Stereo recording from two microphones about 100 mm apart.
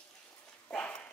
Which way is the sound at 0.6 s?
10° left (ahead or behind).